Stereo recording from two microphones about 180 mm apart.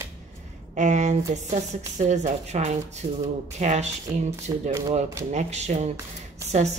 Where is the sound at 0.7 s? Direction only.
40° right (ahead or behind).